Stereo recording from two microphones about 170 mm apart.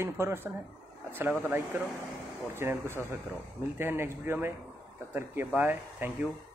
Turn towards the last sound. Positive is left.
turn(degrees=-10)  # may be behind; listen again after turning